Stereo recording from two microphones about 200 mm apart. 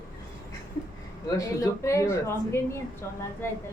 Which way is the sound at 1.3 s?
15° left (ahead or behind).